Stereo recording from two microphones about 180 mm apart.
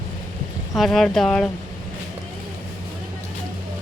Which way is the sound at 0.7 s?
Centre (ahead or behind).